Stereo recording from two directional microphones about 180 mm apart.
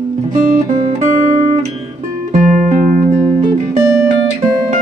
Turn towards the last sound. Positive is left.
turn(degrees=-45)  # may be behind; listen again after turning